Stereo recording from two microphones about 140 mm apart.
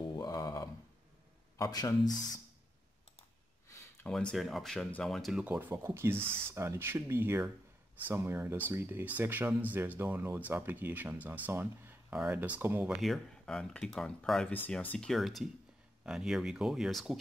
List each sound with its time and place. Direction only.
0.0 s a sound: 30° left (ahead or behind)
1.6 s speech: 25° left (ahead or behind)
4.1 s speech: 5° left (ahead or behind)
5.4 s speech: 10° right (ahead or behind)
13.0 s speech: centre (ahead or behind)